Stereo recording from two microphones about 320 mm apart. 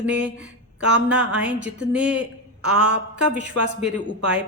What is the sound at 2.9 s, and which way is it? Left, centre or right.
Speech, right.